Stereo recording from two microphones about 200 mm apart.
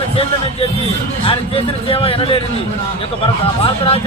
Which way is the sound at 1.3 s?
30° left (ahead or behind).